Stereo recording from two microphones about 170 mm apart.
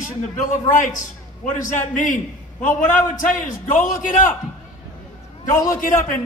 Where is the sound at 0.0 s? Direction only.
50° left (ahead or behind).